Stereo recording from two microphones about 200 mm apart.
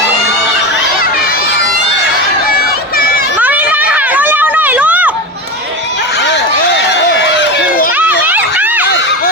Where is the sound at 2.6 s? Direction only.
50° left (ahead or behind).